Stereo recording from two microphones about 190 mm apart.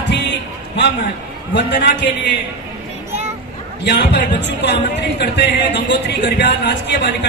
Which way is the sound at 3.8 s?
65° left (ahead or behind).